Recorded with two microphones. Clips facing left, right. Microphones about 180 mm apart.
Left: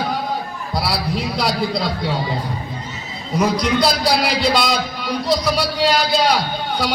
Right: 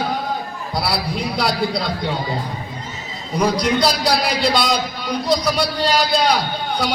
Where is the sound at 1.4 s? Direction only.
Centre (ahead or behind).